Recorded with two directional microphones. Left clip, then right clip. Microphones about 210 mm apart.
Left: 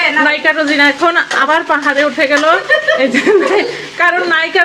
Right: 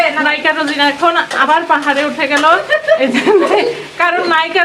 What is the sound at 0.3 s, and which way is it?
Speech, 15° left (ahead or behind).